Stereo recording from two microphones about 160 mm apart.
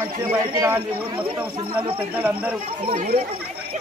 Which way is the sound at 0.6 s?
20° right (ahead or behind).